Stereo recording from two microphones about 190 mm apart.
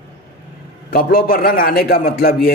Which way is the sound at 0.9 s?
50° left (ahead or behind).